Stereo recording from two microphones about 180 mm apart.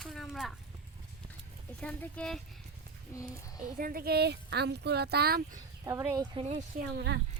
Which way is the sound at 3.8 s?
55° right (ahead or behind).